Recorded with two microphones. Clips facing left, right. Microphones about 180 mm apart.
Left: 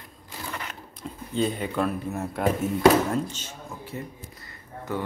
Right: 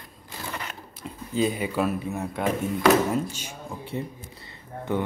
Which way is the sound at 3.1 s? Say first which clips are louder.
Right 1 dB; 10° right (ahead or behind).